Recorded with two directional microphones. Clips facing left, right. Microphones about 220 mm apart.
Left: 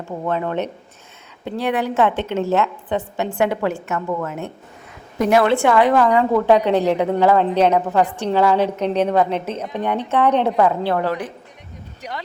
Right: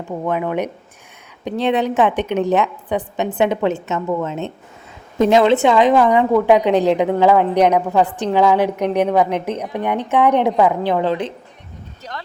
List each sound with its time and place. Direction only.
0.0 s a woman's voice: 15° right (ahead or behind)
8.0 s a woman's voice: 15° left (ahead or behind)
8.3 s a woman's voice: 15° right (ahead or behind)
12.0 s a woman's voice: 15° left (ahead or behind)